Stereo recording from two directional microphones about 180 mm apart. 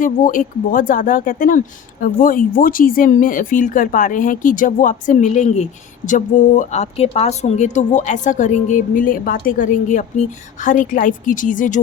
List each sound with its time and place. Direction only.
0.0 s speech: 45° left (ahead or behind)